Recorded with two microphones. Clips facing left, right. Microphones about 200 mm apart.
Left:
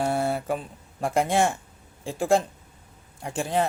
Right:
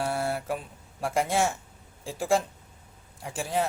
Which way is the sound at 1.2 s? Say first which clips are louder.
Left 3 dB; 55° left (ahead or behind).